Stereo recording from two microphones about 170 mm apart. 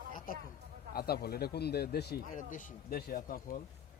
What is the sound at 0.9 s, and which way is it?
Speech, 65° left (ahead or behind).